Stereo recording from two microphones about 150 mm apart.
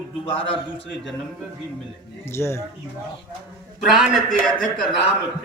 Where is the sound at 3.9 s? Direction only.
Centre (ahead or behind).